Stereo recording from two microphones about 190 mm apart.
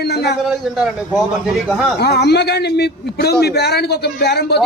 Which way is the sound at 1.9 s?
60° left (ahead or behind).